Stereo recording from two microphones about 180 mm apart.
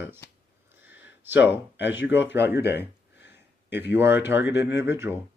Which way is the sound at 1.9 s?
10° right (ahead or behind).